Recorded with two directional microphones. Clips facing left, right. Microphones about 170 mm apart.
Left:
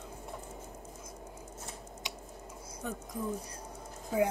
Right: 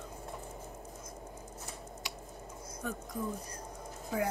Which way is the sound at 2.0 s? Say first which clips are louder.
Left 2 dB; 20° left (ahead or behind).